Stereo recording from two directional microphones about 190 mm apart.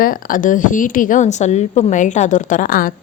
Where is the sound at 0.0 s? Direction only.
45° left (ahead or behind).